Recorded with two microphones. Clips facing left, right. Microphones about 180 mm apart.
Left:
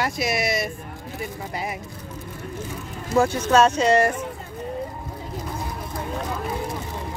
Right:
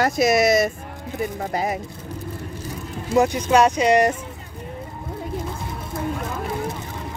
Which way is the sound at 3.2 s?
15° right (ahead or behind).